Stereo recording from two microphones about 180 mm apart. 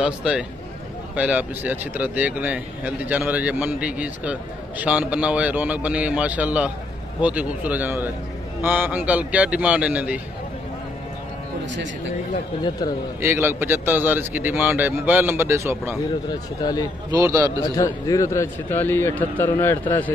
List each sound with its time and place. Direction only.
0.0 s speech: 5° right (ahead or behind)
13.2 s speech: 15° right (ahead or behind)
16.3 s speech: 20° left (ahead or behind)
17.1 s speech: 15° right (ahead or behind)
17.7 s a man's voice: 20° left (ahead or behind)